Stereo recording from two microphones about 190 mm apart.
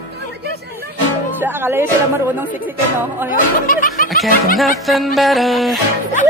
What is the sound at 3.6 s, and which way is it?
Snicker, 45° left (ahead or behind).